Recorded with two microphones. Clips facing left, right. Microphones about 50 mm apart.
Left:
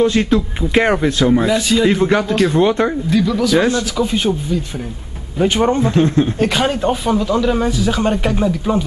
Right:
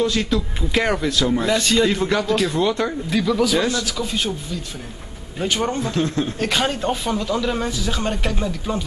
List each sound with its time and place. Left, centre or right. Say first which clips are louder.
0.0 s a man's voice: left 6 dB; left
1.4 s speech: left 3 dB; centre
1.9 s a man's voice: left 5 dB; left
3.1 s speech: left 3 dB; centre
3.5 s a man's voice: left 6 dB; left
6.4 s speech: left 5 dB; centre